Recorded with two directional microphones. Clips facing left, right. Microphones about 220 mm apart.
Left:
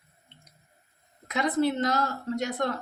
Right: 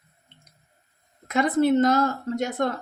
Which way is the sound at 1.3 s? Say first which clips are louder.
Right 5 dB; 50° right (ahead or behind).